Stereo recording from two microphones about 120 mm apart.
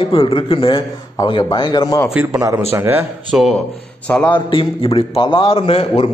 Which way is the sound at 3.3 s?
Centre (ahead or behind).